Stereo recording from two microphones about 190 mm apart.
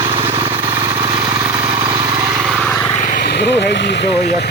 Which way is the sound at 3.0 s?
45° left (ahead or behind).